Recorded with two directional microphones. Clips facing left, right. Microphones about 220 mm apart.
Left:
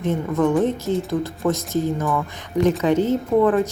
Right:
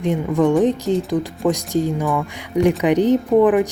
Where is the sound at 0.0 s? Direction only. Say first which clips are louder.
Right 3 dB; 15° right (ahead or behind).